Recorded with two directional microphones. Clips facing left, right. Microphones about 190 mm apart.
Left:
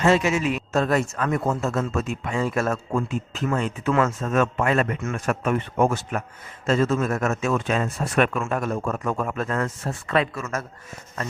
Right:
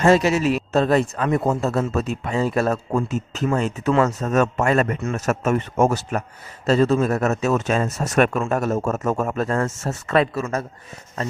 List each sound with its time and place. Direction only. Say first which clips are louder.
0.0 s speech: right 3 dB; 40° right (ahead or behind)